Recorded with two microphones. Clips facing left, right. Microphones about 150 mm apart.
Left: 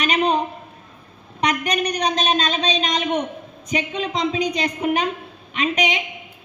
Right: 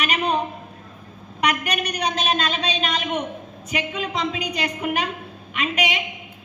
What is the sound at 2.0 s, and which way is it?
A woman's voice, 35° left (ahead or behind).